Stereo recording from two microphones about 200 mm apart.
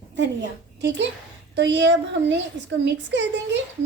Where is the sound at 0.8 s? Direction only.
60° right (ahead or behind).